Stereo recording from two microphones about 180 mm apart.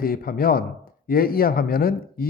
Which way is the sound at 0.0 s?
55° left (ahead or behind).